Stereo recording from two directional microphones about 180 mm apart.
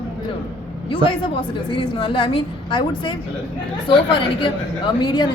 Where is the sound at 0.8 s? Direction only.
30° left (ahead or behind).